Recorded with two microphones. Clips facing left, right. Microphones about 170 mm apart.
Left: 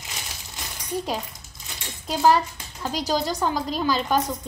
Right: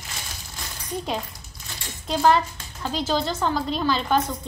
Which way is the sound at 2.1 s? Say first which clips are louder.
Even; 5° left (ahead or behind).